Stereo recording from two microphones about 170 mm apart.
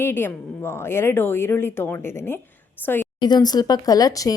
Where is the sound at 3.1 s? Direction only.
25° left (ahead or behind).